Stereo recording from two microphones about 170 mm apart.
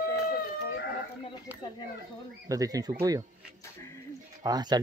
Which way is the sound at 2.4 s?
20° right (ahead or behind).